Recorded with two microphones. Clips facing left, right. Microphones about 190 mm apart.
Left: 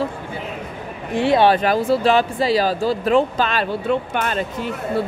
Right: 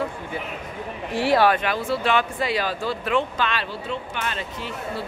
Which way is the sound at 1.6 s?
40° left (ahead or behind).